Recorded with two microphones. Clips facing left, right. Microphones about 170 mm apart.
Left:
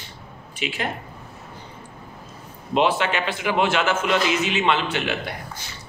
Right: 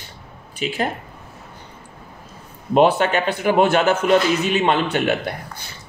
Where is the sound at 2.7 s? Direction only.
45° right (ahead or behind).